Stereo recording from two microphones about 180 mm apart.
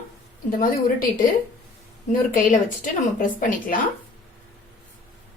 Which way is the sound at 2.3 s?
50° left (ahead or behind).